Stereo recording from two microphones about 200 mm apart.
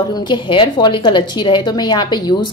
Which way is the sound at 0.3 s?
25° left (ahead or behind).